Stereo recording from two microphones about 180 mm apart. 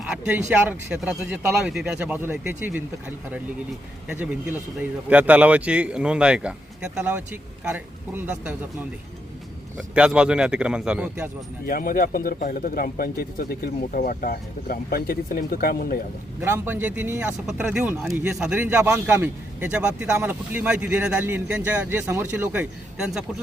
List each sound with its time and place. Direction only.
0.1 s speech: 5° right (ahead or behind)
4.1 s speech: 10° right (ahead or behind)
11.6 s speech: 50° left (ahead or behind)
16.4 s speech: 10° right (ahead or behind)